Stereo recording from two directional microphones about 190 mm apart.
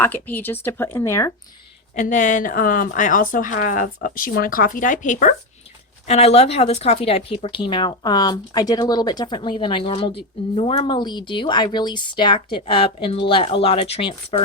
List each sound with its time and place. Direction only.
0.0 s speech: 10° left (ahead or behind)
2.0 s a woman's voice: 40° left (ahead or behind)